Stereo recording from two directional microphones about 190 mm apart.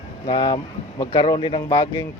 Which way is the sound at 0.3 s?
25° left (ahead or behind).